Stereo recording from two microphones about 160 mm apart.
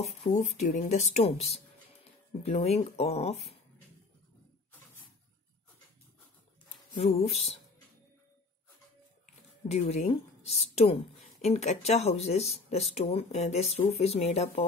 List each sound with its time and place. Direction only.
0.0 s a woman's voice: 45° left (ahead or behind)
6.9 s a woman's voice: 40° left (ahead or behind)
9.7 s a woman's voice: 45° left (ahead or behind)